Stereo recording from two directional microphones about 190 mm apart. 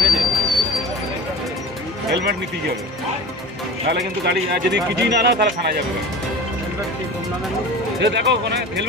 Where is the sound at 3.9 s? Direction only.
60° right (ahead or behind).